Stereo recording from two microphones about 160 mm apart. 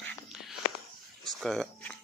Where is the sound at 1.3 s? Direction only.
Centre (ahead or behind).